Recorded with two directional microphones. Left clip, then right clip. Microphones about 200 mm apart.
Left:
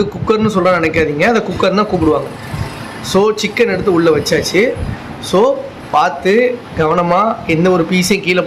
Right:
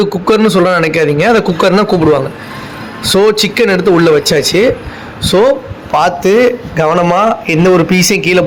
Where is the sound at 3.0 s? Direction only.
20° right (ahead or behind).